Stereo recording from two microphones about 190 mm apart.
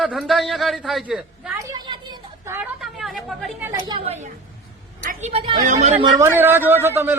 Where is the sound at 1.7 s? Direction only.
20° right (ahead or behind).